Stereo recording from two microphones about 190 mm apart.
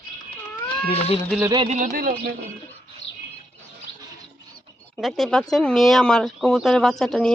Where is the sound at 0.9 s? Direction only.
30° left (ahead or behind).